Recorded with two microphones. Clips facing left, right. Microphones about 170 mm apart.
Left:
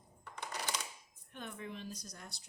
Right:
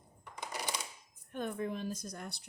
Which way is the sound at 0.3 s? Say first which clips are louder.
Right 2 dB; 10° right (ahead or behind).